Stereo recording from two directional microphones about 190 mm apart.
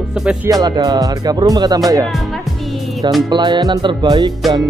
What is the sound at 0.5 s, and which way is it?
Speech, 20° right (ahead or behind).